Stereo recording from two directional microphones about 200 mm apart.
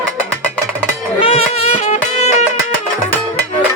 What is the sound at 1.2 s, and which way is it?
Music, 30° left (ahead or behind).